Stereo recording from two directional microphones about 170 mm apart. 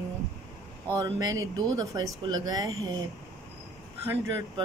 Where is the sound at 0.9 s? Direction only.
20° right (ahead or behind).